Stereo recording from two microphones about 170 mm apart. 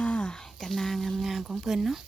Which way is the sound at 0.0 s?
5° left (ahead or behind).